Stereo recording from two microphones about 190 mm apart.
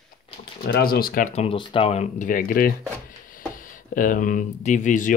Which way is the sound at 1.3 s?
25° left (ahead or behind).